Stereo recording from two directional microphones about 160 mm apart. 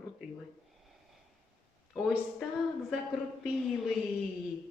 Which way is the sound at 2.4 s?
Centre (ahead or behind).